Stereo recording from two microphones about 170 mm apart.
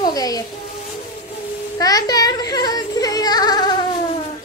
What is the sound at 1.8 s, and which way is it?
Music, 20° left (ahead or behind).